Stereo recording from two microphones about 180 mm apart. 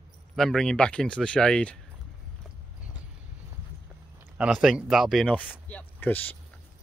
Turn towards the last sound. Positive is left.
turn(degrees=10)  # may be behind; listen again after turning